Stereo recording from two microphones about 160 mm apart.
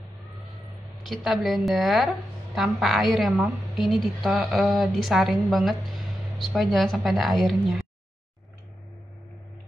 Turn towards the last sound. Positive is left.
turn(degrees=0)  # may be behind; listen again after turning